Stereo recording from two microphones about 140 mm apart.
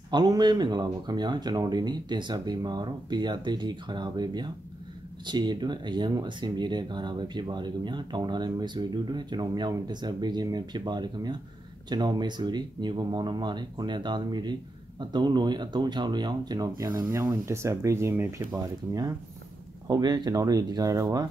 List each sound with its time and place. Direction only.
0.1 s speech: 30° right (ahead or behind)
18.6 s speech: 25° right (ahead or behind)